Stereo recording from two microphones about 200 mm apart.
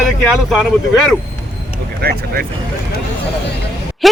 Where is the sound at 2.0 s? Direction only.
50° right (ahead or behind).